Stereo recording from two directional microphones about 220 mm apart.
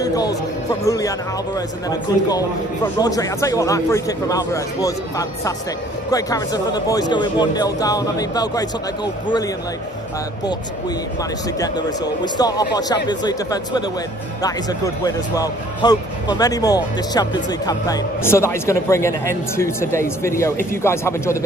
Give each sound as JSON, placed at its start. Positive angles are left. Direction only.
{"t": 0.0, "sound": "music", "side_deg": 15}
{"t": 0.7, "sound": "speech", "side_deg": 15}
{"t": 11.6, "sound": "speech", "side_deg": 15}